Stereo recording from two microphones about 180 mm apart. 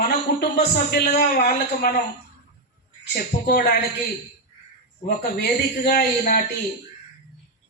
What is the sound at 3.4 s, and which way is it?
Speech, 70° left (ahead or behind).